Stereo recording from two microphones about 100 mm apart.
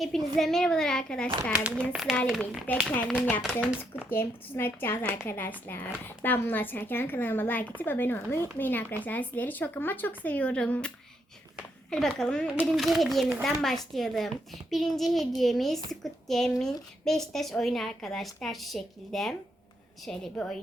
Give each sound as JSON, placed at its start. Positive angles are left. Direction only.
{"t": 0.0, "sound": "speech", "side_deg": 5}
{"t": 1.5, "sound": "speech", "side_deg": -10}
{"t": 1.9, "sound": "speech", "side_deg": 0}
{"t": 2.9, "sound": "speech", "side_deg": 15}